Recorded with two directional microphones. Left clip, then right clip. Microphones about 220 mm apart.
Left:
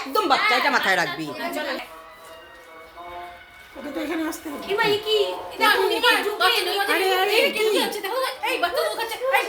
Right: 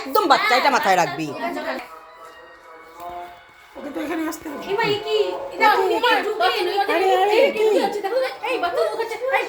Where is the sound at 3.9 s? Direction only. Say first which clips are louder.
Right 1 dB; 5° right (ahead or behind); by 7.8 s 10° left (ahead or behind).